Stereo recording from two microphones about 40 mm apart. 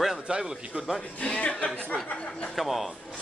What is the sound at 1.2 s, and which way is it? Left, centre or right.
Speech, left.